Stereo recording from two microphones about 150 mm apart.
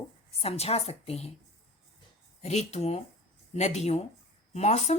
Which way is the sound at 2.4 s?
45° left (ahead or behind).